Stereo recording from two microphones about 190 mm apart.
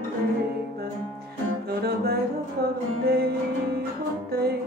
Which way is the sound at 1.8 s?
55° right (ahead or behind).